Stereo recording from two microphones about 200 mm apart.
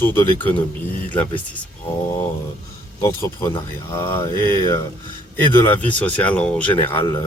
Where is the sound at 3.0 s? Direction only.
15° left (ahead or behind).